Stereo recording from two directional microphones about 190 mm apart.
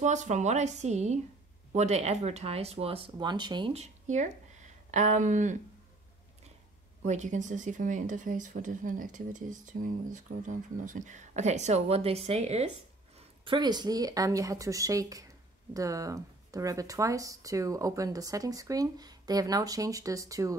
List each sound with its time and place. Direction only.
0.0 s a woman's voice: 40° right (ahead or behind)
7.1 s a woman's voice: 40° right (ahead or behind)
13.5 s speech: 20° right (ahead or behind)